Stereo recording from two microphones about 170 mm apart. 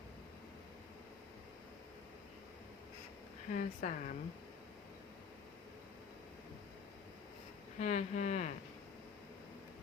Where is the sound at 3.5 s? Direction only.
50° left (ahead or behind).